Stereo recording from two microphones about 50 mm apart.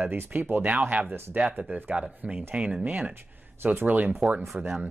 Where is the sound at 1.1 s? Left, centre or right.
Right.